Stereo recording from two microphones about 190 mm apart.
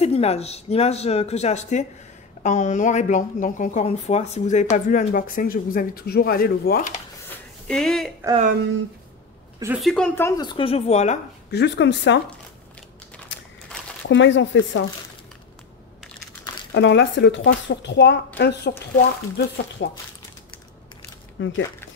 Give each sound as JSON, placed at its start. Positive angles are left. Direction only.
{"t": 0.0, "sound": "speech", "side_deg": 35}
{"t": 7.2, "sound": "a sound", "side_deg": 5}
{"t": 9.8, "sound": "speech", "side_deg": 0}
{"t": 11.5, "sound": "speech", "side_deg": 65}
{"t": 14.0, "sound": "speech", "side_deg": 80}
{"t": 16.7, "sound": "speech", "side_deg": 70}
{"t": 21.4, "sound": "speech", "side_deg": 75}